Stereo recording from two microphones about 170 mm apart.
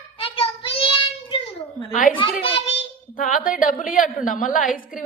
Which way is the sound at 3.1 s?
55° left (ahead or behind).